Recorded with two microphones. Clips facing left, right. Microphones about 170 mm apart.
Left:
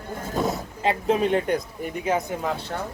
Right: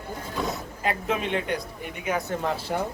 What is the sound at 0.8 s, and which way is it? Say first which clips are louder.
Speech: left 6 dB; 30° left (ahead or behind).